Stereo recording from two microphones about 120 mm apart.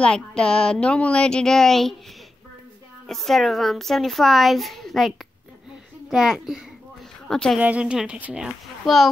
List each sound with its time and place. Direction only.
0.0 s speech: 5° left (ahead or behind)
3.1 s a woman's voice: centre (ahead or behind)
7.5 s a woman's voice: 10° right (ahead or behind)